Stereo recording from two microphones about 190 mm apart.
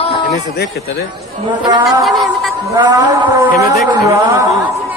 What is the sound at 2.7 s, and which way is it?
A man's voice, 20° right (ahead or behind).